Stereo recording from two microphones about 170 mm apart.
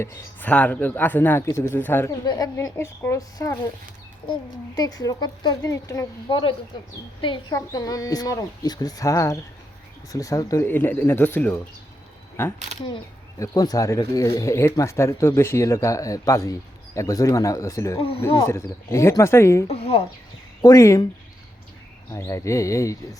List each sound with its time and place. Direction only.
0.0 s speech: 10° left (ahead or behind)
2.2 s speech: 25° left (ahead or behind)
13.4 s speech: 20° left (ahead or behind)
19.6 s speech: 35° left (ahead or behind)
20.6 s speech: 20° left (ahead or behind)
22.1 s speech: 15° left (ahead or behind)